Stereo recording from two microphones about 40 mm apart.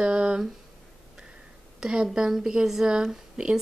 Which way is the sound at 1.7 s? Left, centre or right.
Right.